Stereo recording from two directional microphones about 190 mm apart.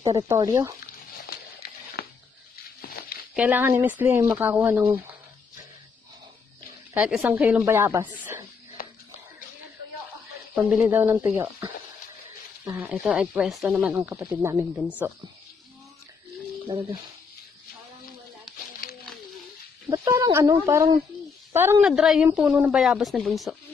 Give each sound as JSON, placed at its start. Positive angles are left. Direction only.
{"t": 0.3, "sound": "speech", "side_deg": -15}
{"t": 1.2, "sound": "a sound", "side_deg": 55}
{"t": 3.3, "sound": "speech", "side_deg": -10}
{"t": 6.9, "sound": "speech", "side_deg": -10}
{"t": 10.5, "sound": "speech", "side_deg": -10}
{"t": 12.6, "sound": "speech", "side_deg": -10}
{"t": 16.7, "sound": "speech", "side_deg": -30}
{"t": 19.9, "sound": "speech", "side_deg": -20}